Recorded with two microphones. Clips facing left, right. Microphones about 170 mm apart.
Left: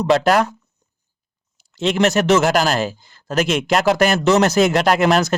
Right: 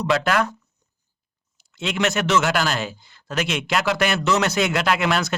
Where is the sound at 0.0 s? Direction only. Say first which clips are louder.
Left 6 dB; 40° left (ahead or behind).